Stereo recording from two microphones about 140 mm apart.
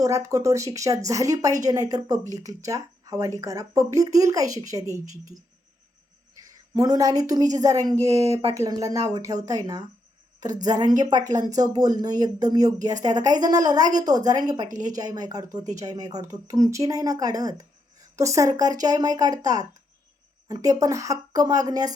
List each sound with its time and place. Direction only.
0.0 s a woman's voice: 25° right (ahead or behind)
6.4 s a woman's voice: 25° right (ahead or behind)